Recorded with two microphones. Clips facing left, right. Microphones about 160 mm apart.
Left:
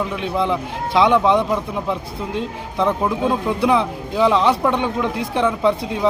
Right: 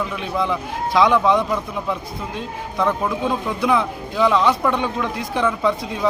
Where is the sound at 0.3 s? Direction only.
20° left (ahead or behind).